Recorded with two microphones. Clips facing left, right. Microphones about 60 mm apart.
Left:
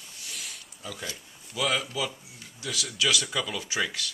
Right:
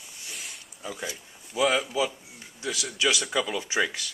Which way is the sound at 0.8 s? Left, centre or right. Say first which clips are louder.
Right 3 dB; right.